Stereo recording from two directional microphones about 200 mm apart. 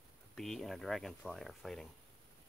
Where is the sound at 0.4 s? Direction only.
Centre (ahead or behind).